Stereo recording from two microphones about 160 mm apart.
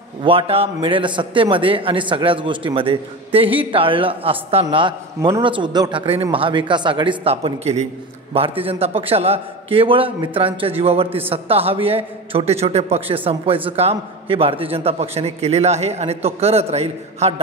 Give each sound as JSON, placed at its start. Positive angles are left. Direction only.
{"t": 0.2, "sound": "a man's voice", "side_deg": -35}